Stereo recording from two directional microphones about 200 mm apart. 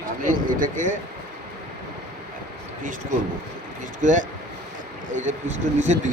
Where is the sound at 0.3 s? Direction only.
45° right (ahead or behind).